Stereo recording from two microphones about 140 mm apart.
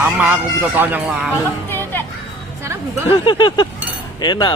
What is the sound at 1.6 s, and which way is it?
Music, 15° left (ahead or behind).